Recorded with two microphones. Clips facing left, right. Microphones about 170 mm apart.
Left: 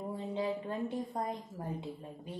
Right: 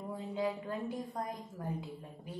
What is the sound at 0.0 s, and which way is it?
A woman's voice, 25° left (ahead or behind).